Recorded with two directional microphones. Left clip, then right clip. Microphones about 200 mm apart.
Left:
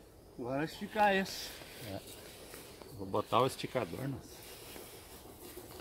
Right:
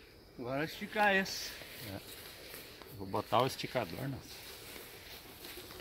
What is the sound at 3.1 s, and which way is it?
Speech, 30° right (ahead or behind).